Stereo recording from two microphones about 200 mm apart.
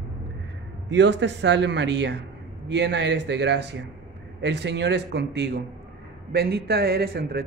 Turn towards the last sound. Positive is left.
turn(degrees=-50)  # may be behind; listen again after turning